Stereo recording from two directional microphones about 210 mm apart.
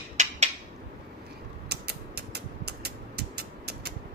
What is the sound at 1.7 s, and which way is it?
Creak, 50° right (ahead or behind).